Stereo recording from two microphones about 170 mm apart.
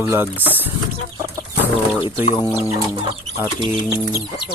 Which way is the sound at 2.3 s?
10° right (ahead or behind).